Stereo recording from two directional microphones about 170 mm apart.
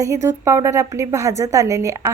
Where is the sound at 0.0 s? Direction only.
15° right (ahead or behind).